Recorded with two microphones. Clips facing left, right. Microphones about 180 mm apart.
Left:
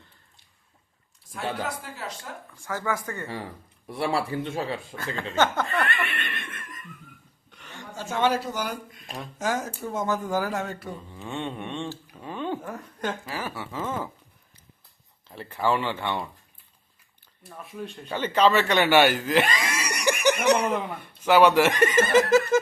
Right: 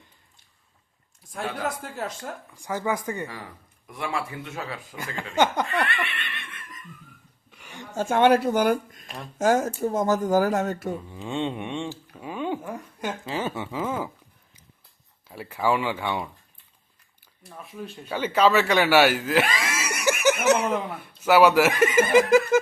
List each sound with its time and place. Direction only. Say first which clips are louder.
1.8 s speech: right 5 dB; 50° right (ahead or behind)
2.6 s speech: right 2 dB; 15° right (ahead or behind)
3.8 s speech: left 4 dB; 35° left (ahead or behind)
5.3 s speech: right 2 dB; 15° right (ahead or behind)
5.6 s speech: even; 45° left (ahead or behind)
7.5 s a sound: right 2 dB; 10° right (ahead or behind)
7.9 s speech: right 6 dB; 55° right (ahead or behind)
11.1 s speech: right 1 dB; 15° right (ahead or behind)
13.2 s speech: right 4 dB; 20° right (ahead or behind)
15.3 s speech: right 1 dB; 10° right (ahead or behind)
17.4 s speech: left 1 dB; centre (ahead or behind)